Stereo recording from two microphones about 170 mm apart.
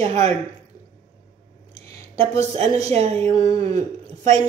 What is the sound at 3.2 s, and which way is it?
Speech, 20° left (ahead or behind).